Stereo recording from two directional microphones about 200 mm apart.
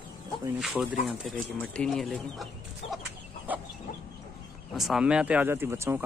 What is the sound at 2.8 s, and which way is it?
Chicken, 30° left (ahead or behind).